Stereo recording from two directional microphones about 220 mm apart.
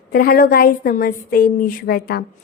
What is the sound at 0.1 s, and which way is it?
A woman's voice, 45° left (ahead or behind).